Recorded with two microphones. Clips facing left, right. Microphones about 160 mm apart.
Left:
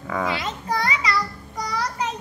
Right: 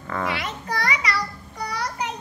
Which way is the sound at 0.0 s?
10° left (ahead or behind).